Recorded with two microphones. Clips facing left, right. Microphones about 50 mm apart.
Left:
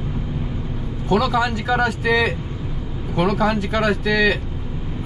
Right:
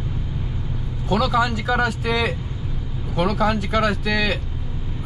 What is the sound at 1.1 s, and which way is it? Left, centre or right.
Speech, centre.